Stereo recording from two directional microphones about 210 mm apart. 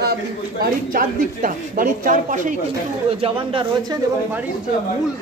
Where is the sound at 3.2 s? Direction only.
25° right (ahead or behind).